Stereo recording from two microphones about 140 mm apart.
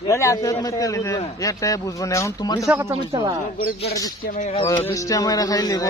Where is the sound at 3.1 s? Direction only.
25° right (ahead or behind).